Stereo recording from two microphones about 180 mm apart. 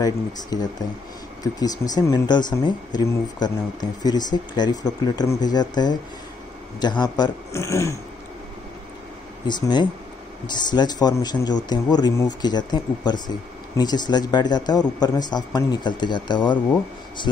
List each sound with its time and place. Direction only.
0.0 s speech: 20° left (ahead or behind)
9.5 s speech: 25° left (ahead or behind)